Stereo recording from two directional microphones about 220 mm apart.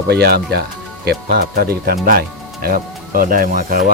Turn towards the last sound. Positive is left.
turn(degrees=-40)  # may be behind; listen again after turning